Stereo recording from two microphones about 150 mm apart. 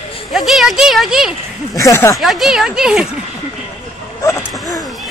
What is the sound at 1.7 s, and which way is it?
Speech, 20° left (ahead or behind).